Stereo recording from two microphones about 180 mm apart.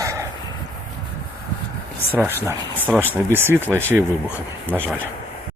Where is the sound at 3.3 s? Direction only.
10° right (ahead or behind).